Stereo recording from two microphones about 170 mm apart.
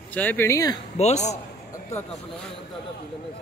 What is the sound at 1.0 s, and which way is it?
Speech, 40° left (ahead or behind).